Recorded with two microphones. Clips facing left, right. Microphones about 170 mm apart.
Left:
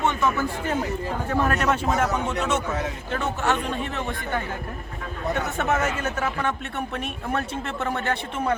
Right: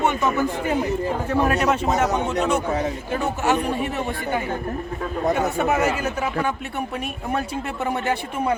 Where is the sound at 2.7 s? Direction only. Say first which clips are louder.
Right 5 dB; 35° right (ahead or behind).